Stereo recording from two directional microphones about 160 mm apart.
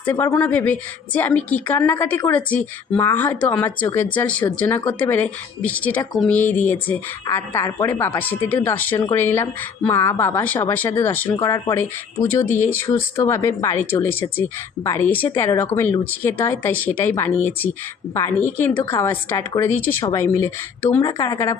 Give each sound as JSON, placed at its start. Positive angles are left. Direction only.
{"t": 0.0, "sound": "a woman's voice", "side_deg": 10}
{"t": 18.1, "sound": "a woman's voice", "side_deg": 15}